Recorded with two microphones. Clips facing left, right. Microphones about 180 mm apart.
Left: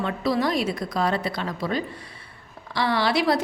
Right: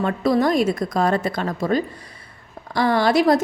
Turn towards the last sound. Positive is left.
turn(degrees=-45)  # may be behind; listen again after turning